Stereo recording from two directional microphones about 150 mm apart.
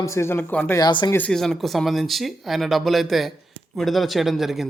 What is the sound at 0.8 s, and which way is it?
Speech, 30° left (ahead or behind).